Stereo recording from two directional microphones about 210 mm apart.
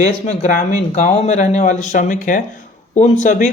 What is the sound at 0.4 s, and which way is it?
Speech, 35° left (ahead or behind).